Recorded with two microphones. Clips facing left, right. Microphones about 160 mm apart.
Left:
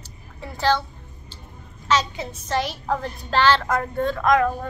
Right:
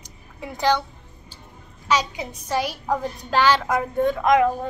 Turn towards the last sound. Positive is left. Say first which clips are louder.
# right 1 dB
turn(degrees=-20)  # may be behind; listen again after turning